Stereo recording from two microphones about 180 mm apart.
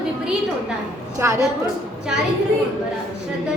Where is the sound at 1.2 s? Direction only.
15° right (ahead or behind).